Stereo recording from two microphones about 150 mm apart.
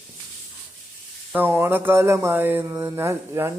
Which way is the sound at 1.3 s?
15° right (ahead or behind).